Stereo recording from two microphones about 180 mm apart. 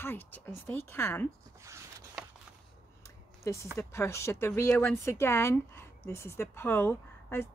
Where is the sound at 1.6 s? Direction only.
15° right (ahead or behind).